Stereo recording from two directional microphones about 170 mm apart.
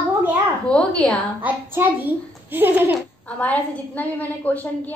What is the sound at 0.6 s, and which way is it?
Speech, 5° left (ahead or behind).